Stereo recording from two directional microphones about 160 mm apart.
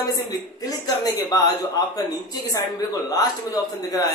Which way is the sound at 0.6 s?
25° left (ahead or behind).